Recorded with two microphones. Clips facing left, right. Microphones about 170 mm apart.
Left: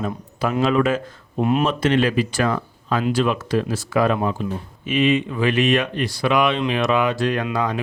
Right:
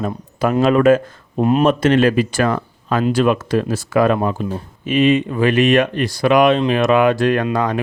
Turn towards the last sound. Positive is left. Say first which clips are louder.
# right 5 dB
turn(degrees=-45)  # may be behind; listen again after turning